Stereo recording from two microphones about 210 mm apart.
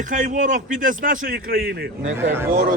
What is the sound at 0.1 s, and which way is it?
A man's voice, 35° right (ahead or behind).